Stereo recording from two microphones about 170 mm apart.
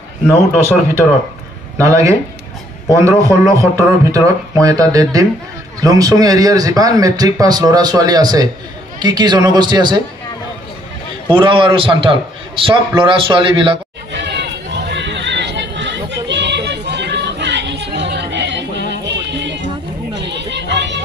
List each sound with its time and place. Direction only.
1.8 s speech: 20° right (ahead or behind)
11.3 s speech: 30° right (ahead or behind)
14.1 s run: 90° right
20.2 s chatter: 90° right